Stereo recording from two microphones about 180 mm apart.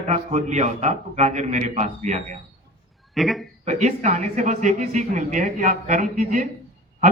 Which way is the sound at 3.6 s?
40° right (ahead or behind).